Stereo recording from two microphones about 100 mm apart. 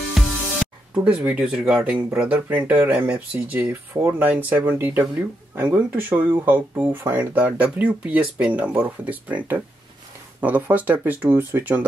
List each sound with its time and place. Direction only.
0.2 s music: centre (ahead or behind)
0.9 s speech: 10° right (ahead or behind)